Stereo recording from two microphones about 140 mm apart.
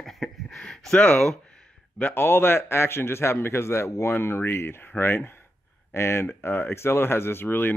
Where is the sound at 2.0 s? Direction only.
15° left (ahead or behind).